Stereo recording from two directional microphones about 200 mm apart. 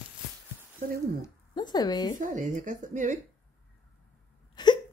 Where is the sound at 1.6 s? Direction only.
20° left (ahead or behind).